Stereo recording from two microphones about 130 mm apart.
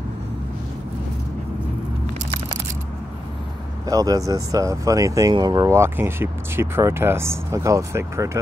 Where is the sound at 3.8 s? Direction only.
30° right (ahead or behind).